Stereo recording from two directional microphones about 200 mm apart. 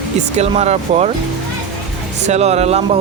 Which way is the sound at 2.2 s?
35° right (ahead or behind).